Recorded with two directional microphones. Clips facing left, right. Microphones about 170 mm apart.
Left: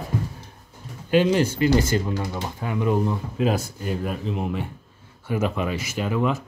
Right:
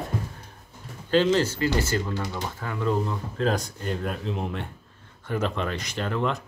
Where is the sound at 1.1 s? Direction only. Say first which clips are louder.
Left 2 dB; 15° left (ahead or behind).